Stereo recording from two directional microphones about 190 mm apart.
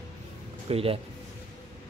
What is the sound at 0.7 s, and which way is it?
Speech, 30° right (ahead or behind).